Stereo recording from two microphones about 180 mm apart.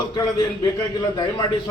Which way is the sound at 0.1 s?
20° left (ahead or behind).